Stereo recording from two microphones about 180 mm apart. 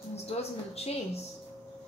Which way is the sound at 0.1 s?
35° left (ahead or behind).